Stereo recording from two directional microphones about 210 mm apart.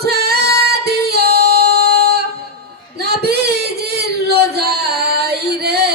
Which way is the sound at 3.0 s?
50° right (ahead or behind).